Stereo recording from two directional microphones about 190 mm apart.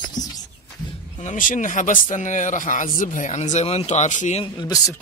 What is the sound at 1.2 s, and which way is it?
Speech, 45° left (ahead or behind).